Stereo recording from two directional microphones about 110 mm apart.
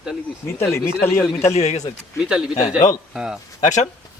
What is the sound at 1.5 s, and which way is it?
Speech, 75° left (ahead or behind).